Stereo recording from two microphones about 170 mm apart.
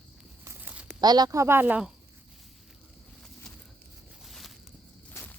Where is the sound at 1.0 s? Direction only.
25° right (ahead or behind); by 1.9 s 10° right (ahead or behind).